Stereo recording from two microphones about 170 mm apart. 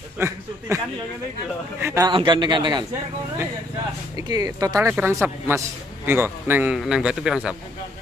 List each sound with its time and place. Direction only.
0.2 s speech: 15° right (ahead or behind)
0.7 s a sound: 20° right (ahead or behind)
1.8 s speech: 15° right (ahead or behind)
2.0 s a man's voice: 25° right (ahead or behind)
4.2 s speech: 20° right (ahead or behind); by 7.5 s 5° right (ahead or behind)